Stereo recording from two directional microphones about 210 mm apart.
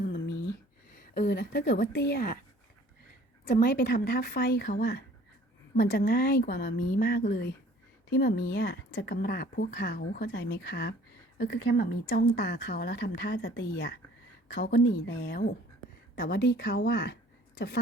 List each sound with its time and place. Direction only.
0.9 s a woman's voice: 45° left (ahead or behind)
3.4 s a woman's voice: 50° left (ahead or behind)